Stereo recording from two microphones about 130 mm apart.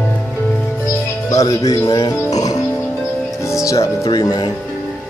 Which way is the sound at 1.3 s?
25° left (ahead or behind).